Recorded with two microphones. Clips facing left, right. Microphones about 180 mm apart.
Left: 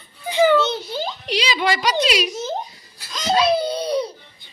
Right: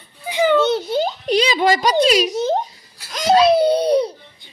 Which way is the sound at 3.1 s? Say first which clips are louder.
Right 5 dB; 70° right (ahead or behind).